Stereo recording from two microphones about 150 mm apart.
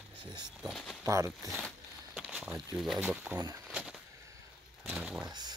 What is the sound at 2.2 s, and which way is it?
Speech, 5° right (ahead or behind).